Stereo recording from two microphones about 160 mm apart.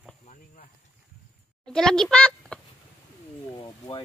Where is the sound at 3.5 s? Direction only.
25° left (ahead or behind).